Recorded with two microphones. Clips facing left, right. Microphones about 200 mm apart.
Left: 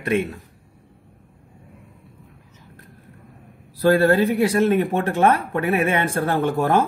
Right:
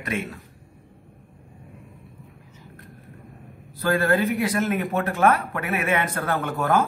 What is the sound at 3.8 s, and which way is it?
Speech, 30° left (ahead or behind).